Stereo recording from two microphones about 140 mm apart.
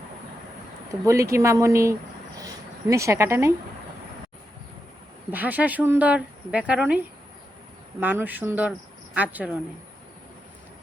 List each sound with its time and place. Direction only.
1.0 s speech: 20° right (ahead or behind)
5.3 s speech: 10° right (ahead or behind)
8.0 s speech: 10° right (ahead or behind)